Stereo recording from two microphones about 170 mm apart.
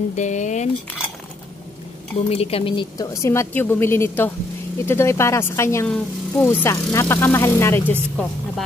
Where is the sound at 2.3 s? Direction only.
35° left (ahead or behind); by 8.0 s 15° left (ahead or behind).